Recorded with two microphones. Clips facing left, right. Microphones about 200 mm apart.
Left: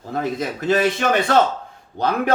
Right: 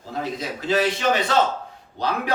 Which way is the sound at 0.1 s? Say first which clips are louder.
Left 5 dB; 50° left (ahead or behind).